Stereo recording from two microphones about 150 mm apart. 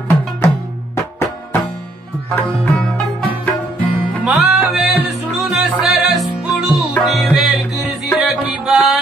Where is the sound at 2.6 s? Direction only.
Centre (ahead or behind).